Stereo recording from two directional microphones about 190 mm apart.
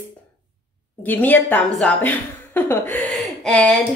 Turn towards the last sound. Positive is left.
turn(degrees=0)  # may be behind; listen again after turning